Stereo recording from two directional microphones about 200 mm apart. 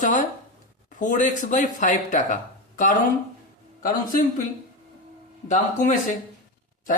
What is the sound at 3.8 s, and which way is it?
Speech, 45° left (ahead or behind).